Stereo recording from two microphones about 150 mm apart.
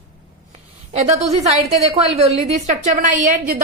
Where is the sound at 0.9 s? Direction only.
45° right (ahead or behind).